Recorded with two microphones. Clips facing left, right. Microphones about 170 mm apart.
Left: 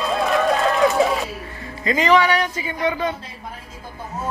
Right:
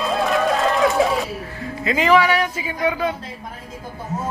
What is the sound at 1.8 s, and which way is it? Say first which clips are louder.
Speech: even; 5° right (ahead or behind).